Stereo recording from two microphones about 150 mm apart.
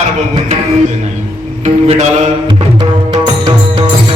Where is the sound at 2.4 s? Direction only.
30° right (ahead or behind).